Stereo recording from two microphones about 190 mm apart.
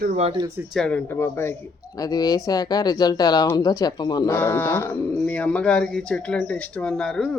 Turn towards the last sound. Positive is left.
turn(degrees=5)  # may be behind; listen again after turning